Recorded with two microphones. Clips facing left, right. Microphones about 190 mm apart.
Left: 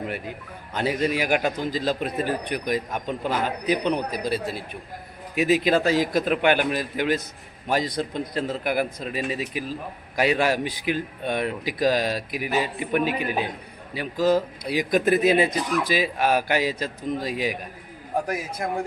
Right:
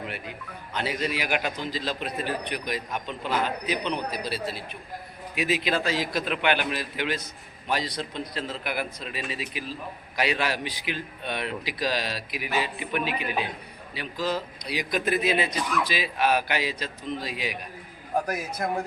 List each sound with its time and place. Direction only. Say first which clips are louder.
0.7 s a man's voice: left 5 dB; 45° left (ahead or behind)